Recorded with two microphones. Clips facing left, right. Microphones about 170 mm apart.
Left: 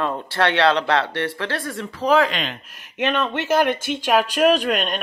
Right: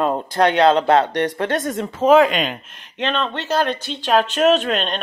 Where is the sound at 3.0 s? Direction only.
10° left (ahead or behind).